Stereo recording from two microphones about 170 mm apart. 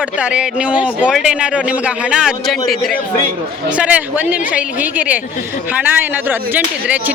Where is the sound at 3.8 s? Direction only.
10° right (ahead or behind).